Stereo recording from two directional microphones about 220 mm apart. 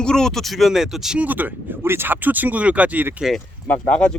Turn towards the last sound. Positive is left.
turn(degrees=5)  # may be behind; listen again after turning